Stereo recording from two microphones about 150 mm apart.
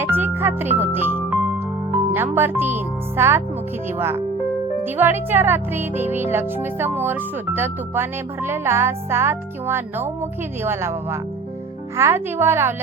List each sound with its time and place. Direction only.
0.0 s speech: 15° right (ahead or behind)